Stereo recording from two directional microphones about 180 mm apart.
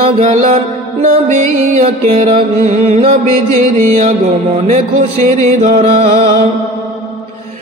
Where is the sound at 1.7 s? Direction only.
40° right (ahead or behind).